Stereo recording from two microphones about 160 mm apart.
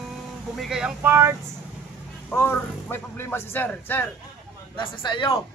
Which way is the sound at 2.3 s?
15° left (ahead or behind).